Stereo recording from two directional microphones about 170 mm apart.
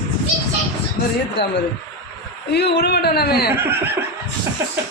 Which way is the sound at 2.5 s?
75° left (ahead or behind).